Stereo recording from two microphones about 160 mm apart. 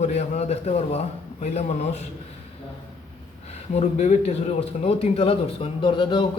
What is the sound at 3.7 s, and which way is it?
Speech, 45° left (ahead or behind).